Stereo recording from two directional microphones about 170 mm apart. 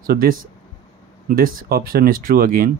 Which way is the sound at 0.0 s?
60° right (ahead or behind).